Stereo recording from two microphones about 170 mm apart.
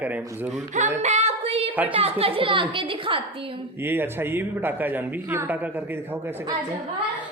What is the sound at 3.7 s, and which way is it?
Speech, 10° right (ahead or behind).